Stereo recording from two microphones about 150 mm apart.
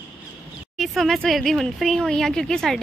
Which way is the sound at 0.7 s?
Centre (ahead or behind).